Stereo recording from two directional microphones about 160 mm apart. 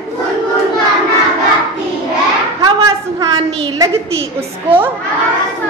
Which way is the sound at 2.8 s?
20° right (ahead or behind).